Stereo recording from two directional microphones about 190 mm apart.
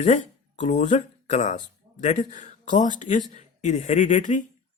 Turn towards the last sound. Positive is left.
turn(degrees=40)  # may be behind; listen again after turning